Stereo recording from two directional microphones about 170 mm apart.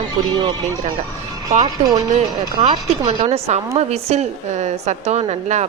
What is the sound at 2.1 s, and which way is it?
A woman's voice, 40° right (ahead or behind).